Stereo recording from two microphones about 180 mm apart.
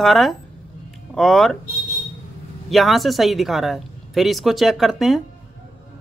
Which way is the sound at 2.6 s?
Centre (ahead or behind).